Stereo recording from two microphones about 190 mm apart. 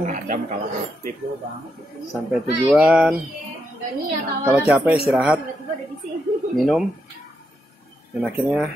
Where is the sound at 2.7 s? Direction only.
5° right (ahead or behind).